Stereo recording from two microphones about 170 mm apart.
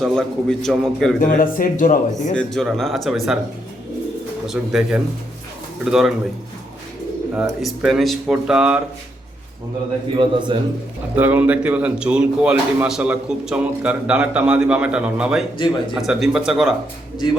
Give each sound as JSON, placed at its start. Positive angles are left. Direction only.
{"t": 0.0, "sound": "speech", "side_deg": 5}
{"t": 1.2, "sound": "speech", "side_deg": 50}
{"t": 2.3, "sound": "speech", "side_deg": 5}
{"t": 4.4, "sound": "speech", "side_deg": 0}
{"t": 7.6, "sound": "speech", "side_deg": 0}
{"t": 10.2, "sound": "a man's voice", "side_deg": -30}
{"t": 11.1, "sound": "speech", "side_deg": -10}
{"t": 15.5, "sound": "speech", "side_deg": 30}
{"t": 16.0, "sound": "speech", "side_deg": 0}